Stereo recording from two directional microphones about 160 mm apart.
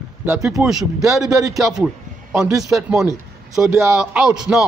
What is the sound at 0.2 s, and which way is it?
Speech, 15° right (ahead or behind).